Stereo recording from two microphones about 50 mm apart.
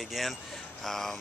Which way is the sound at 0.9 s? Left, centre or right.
Centre.